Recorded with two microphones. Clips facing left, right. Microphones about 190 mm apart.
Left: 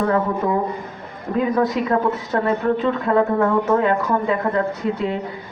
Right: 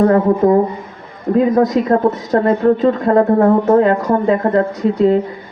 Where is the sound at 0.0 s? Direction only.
40° right (ahead or behind).